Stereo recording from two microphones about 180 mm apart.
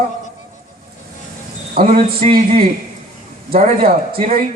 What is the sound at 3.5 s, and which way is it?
Speech, 55° right (ahead or behind).